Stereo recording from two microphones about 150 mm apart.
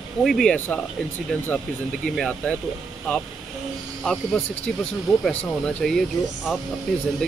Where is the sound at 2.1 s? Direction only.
5° left (ahead or behind).